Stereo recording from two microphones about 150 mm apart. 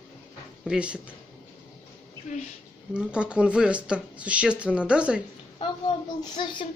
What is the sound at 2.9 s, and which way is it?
Speech, 5° right (ahead or behind).